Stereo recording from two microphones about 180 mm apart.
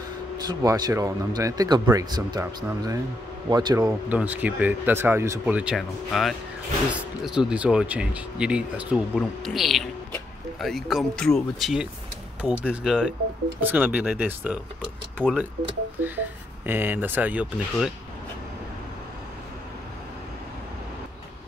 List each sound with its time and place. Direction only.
0.5 s speech: 20° right (ahead or behind)
4.1 s speech: 10° right (ahead or behind)
15.2 s speech: 5° left (ahead or behind)
16.0 s speech: 10° right (ahead or behind)